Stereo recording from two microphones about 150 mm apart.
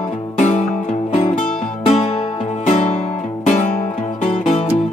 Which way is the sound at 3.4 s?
55° left (ahead or behind).